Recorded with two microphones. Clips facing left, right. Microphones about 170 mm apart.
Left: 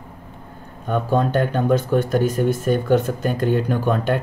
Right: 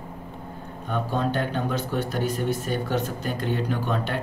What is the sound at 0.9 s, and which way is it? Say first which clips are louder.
Speech: left 6 dB; 50° left (ahead or behind).